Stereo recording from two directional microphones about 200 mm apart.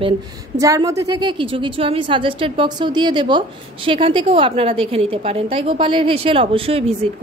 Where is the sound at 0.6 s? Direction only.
15° right (ahead or behind).